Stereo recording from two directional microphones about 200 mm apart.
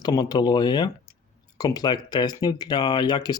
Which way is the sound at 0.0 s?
20° left (ahead or behind).